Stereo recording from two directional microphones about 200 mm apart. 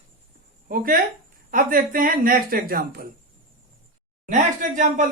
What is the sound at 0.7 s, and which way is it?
Speech, 45° right (ahead or behind).